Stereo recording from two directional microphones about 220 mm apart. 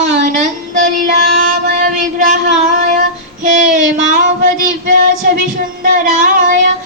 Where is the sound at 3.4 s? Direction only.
35° right (ahead or behind).